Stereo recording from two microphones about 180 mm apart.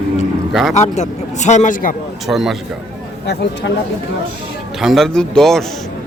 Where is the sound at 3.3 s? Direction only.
65° left (ahead or behind).